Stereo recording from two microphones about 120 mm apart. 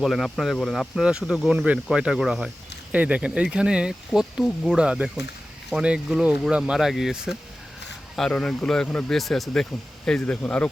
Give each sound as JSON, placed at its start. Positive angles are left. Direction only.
{"t": 0.0, "sound": "speech", "side_deg": 0}